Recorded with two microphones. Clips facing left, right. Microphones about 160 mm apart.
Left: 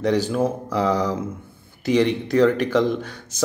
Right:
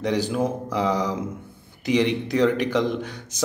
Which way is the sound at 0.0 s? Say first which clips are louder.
Left 3 dB; 15° right (ahead or behind).